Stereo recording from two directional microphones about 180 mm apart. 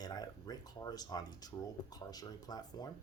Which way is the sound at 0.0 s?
20° left (ahead or behind).